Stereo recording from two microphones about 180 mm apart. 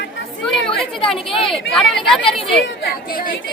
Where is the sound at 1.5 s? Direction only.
Centre (ahead or behind).